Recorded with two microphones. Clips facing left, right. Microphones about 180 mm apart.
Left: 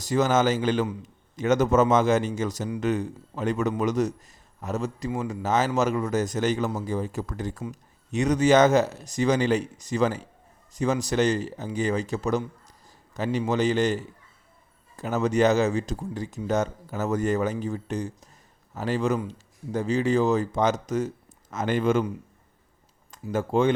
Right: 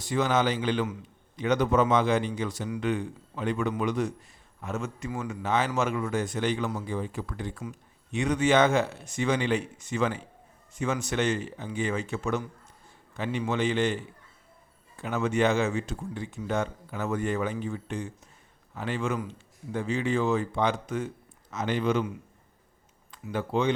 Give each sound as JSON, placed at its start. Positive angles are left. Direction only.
{"t": 0.0, "sound": "a man's voice", "side_deg": 40}
{"t": 23.1, "sound": "speech", "side_deg": 45}